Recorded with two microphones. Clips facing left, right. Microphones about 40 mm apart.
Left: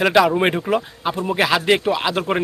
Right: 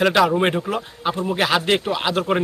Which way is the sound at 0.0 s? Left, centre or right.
Centre.